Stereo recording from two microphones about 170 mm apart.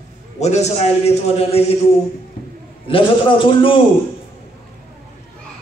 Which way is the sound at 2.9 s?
30° left (ahead or behind).